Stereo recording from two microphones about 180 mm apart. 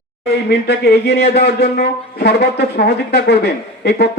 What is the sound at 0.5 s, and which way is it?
Speech, 70° left (ahead or behind).